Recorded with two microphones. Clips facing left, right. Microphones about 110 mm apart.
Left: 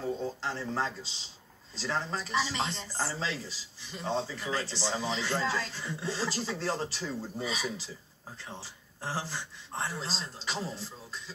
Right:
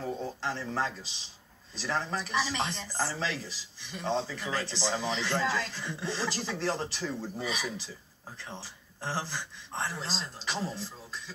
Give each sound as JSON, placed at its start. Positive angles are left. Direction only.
{"t": 0.2, "sound": "speech", "side_deg": 20}
{"t": 9.0, "sound": "speech", "side_deg": 15}